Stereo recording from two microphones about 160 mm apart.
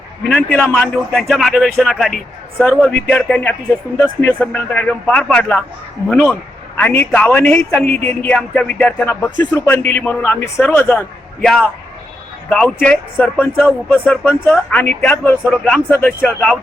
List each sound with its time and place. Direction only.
0.3 s a man's voice: 5° left (ahead or behind)